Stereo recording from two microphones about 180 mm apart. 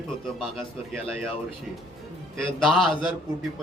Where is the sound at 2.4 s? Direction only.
Centre (ahead or behind).